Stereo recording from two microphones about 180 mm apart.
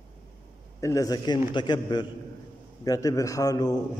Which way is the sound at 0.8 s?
20° left (ahead or behind).